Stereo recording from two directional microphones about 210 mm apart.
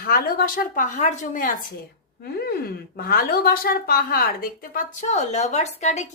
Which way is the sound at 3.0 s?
45° left (ahead or behind).